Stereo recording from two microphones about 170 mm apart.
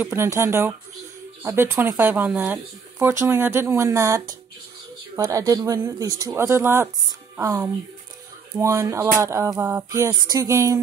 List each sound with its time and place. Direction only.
0.0 s speech: 15° right (ahead or behind)